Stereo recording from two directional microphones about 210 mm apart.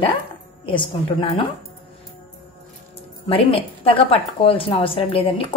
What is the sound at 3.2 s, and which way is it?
A woman's voice, 25° left (ahead or behind).